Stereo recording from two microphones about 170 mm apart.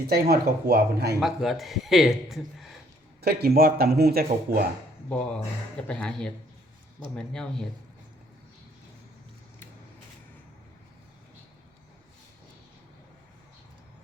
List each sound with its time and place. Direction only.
0.1 s speech: 65° right (ahead or behind)
1.2 s a man's voice: centre (ahead or behind)
3.2 s speech: 70° right (ahead or behind)
5.0 s a man's voice: 5° left (ahead or behind)